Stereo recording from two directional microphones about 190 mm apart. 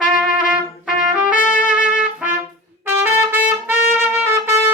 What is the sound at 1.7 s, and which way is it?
Trumpet, 5° right (ahead or behind).